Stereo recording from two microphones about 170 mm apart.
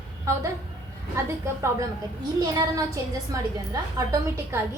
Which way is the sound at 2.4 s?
20° right (ahead or behind).